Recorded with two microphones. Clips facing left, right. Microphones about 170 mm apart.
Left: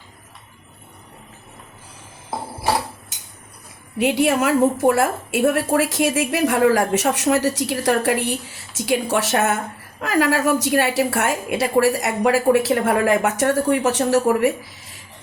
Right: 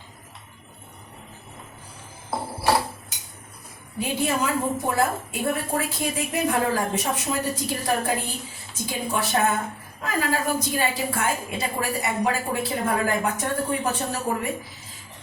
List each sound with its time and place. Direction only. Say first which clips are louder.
3.9 s a woman's voice: left 7 dB; 80° left